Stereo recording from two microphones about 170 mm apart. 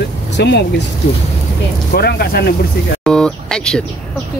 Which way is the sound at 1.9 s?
70° left (ahead or behind).